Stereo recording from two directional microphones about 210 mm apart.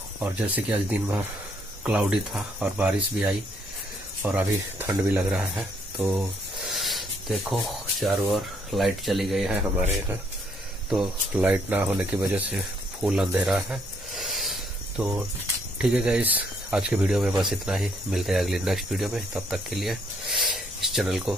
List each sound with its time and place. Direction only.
0.2 s speech: 5° right (ahead or behind)